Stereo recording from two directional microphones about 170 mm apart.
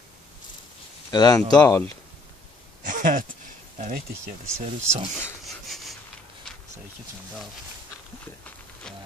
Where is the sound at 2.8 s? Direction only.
50° right (ahead or behind).